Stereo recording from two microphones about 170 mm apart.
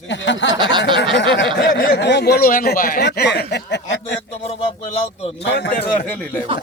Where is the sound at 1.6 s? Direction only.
60° left (ahead or behind); by 4.2 s 90° left.